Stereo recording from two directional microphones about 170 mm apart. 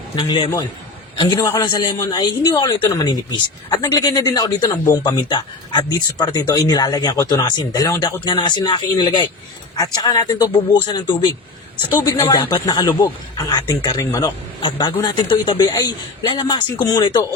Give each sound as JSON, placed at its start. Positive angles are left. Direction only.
{"t": 0.2, "sound": "speech", "side_deg": 30}
{"t": 12.0, "sound": "speech", "side_deg": 25}